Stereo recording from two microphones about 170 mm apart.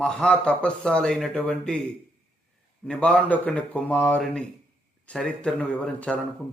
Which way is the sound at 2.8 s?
5° left (ahead or behind).